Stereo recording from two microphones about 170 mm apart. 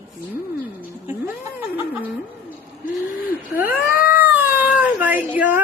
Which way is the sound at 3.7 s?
60° left (ahead or behind).